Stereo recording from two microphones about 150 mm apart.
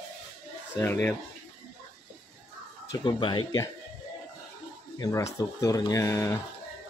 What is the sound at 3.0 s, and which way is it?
Speech, 30° left (ahead or behind).